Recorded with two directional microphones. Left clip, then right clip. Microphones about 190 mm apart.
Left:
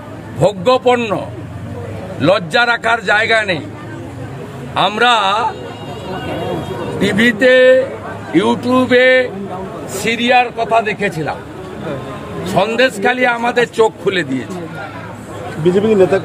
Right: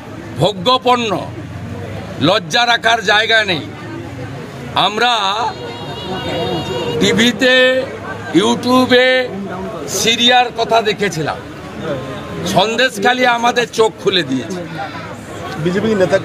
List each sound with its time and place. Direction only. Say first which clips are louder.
0.4 s a man's voice: left 1 dB; centre (ahead or behind)
4.7 s speech: left 2 dB; 5° left (ahead or behind)
7.0 s a man's voice: left 1 dB; 5° left (ahead or behind)
12.4 s a man's voice: even; centre (ahead or behind)
15.7 s speech: left 2 dB; 40° left (ahead or behind)